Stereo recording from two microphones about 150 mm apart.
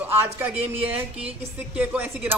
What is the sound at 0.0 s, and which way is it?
Speech, 15° right (ahead or behind).